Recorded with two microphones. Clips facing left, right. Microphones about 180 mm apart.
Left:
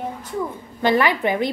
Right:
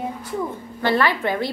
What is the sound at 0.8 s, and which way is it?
Speech, 15° left (ahead or behind).